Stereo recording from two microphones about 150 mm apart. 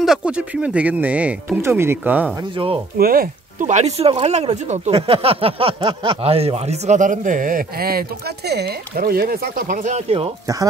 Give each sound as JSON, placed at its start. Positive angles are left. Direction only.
{"t": 0.0, "sound": "speech", "side_deg": -5}
{"t": 2.5, "sound": "speech", "side_deg": -35}
{"t": 3.0, "sound": "speech", "side_deg": -75}
{"t": 8.5, "sound": "speech", "side_deg": -90}